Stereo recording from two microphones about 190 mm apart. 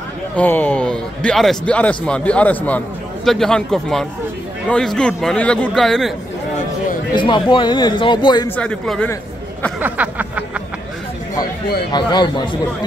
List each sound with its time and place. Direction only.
0.4 s a man's voice: 10° left (ahead or behind)
7.2 s a man's voice: 25° left (ahead or behind)
8.5 s a man's voice: 5° left (ahead or behind)
9.8 s a sound: 10° right (ahead or behind)
11.9 s a man's voice: 25° left (ahead or behind)